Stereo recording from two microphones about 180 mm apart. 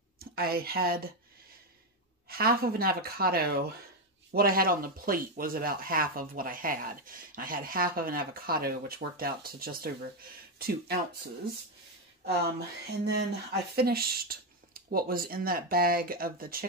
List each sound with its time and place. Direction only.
0.2 s speech: 55° right (ahead or behind)
2.2 s speech: 55° right (ahead or behind)
12.3 s speech: 65° right (ahead or behind)